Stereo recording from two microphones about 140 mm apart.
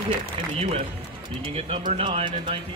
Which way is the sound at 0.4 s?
40° right (ahead or behind).